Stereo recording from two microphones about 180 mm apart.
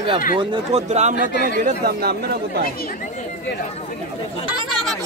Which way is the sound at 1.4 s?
55° right (ahead or behind).